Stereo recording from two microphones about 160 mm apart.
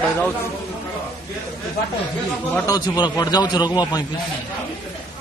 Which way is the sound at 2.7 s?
25° left (ahead or behind).